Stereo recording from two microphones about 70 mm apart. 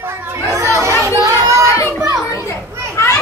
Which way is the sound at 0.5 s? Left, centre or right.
Right.